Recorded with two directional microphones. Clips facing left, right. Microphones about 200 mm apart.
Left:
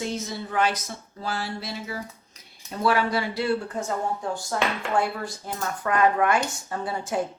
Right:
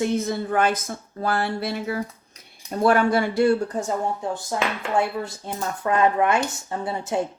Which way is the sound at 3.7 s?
20° right (ahead or behind).